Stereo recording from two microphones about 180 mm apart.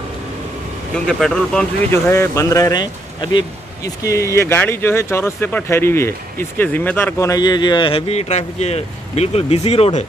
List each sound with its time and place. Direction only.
0.9 s speech: 5° left (ahead or behind); by 10.0 s 35° left (ahead or behind)